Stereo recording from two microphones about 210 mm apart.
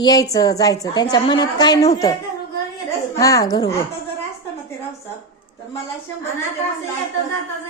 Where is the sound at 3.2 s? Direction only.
15° left (ahead or behind).